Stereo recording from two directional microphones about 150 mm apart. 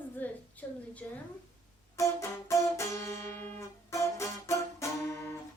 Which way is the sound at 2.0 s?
20° left (ahead or behind).